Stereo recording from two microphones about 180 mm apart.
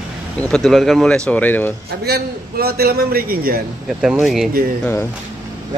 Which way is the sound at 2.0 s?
60° right (ahead or behind).